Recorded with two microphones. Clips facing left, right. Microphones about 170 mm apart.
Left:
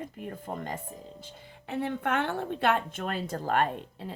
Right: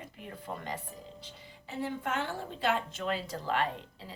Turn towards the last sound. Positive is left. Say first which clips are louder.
# left 4 dB
turn(degrees=50)  # may be behind; listen again after turning